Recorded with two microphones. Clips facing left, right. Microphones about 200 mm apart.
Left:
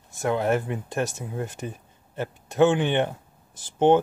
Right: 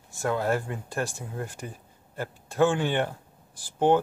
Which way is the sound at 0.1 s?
20° left (ahead or behind).